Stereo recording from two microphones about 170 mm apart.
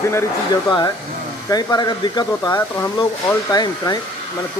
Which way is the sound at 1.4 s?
20° left (ahead or behind).